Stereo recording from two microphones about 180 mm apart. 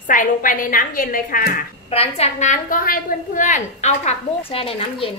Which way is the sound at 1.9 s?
35° left (ahead or behind).